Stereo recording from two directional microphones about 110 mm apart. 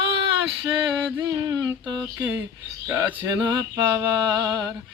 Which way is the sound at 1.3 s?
30° right (ahead or behind).